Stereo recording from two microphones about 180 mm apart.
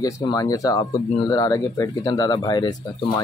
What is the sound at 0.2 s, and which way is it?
Speech, 20° left (ahead or behind).